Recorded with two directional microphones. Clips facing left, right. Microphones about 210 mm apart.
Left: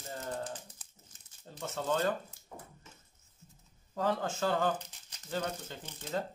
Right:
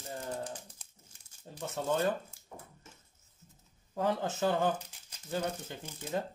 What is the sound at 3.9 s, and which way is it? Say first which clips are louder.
A man's voice: right 1 dB; 15° right (ahead or behind).